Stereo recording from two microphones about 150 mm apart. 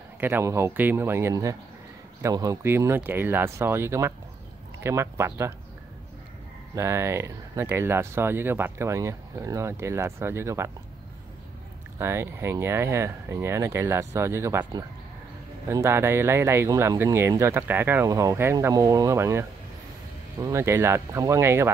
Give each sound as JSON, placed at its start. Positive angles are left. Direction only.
{"t": 0.2, "sound": "speech", "side_deg": -15}
{"t": 6.7, "sound": "speech", "side_deg": -20}
{"t": 12.0, "sound": "speech", "side_deg": -15}